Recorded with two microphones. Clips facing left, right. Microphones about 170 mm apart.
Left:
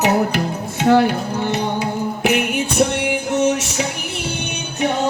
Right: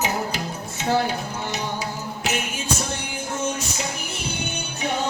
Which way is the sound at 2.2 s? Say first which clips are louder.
Left 9 dB; 60° left (ahead or behind).